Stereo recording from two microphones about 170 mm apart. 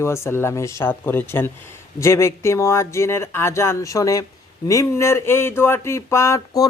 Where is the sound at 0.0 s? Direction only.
15° left (ahead or behind).